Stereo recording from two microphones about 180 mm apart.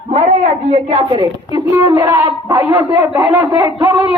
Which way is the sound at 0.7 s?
25° right (ahead or behind).